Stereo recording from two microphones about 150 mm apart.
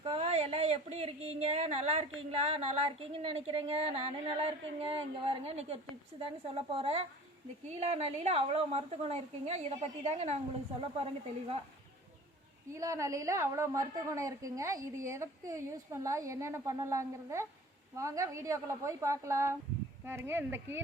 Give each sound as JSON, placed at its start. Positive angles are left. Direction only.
{"t": 0.0, "sound": "a sound", "side_deg": -40}
{"t": 3.9, "sound": "a woman's voice", "side_deg": -40}
{"t": 12.7, "sound": "a woman's voice", "side_deg": -20}